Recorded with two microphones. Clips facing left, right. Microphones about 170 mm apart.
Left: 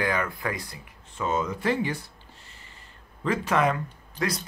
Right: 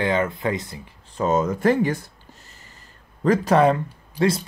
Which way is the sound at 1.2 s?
45° right (ahead or behind).